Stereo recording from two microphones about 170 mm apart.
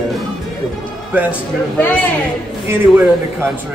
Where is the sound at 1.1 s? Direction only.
10° right (ahead or behind).